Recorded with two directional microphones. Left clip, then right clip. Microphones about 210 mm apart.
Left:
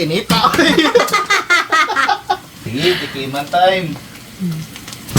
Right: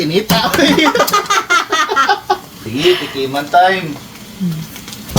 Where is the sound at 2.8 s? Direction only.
Centre (ahead or behind).